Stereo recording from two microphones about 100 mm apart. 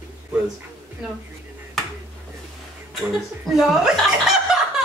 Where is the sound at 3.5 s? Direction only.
Centre (ahead or behind).